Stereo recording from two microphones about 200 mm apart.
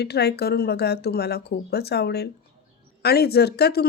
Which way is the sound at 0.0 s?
55° left (ahead or behind).